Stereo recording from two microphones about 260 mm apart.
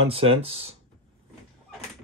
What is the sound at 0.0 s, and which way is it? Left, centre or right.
Speech, right.